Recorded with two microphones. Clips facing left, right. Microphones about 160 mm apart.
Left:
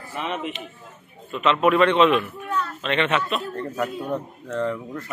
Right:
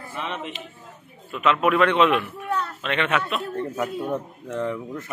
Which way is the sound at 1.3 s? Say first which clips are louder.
Left 1 dB; 5° right (ahead or behind).